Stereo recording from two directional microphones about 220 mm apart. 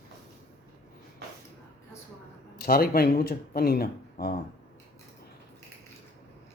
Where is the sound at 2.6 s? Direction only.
45° left (ahead or behind).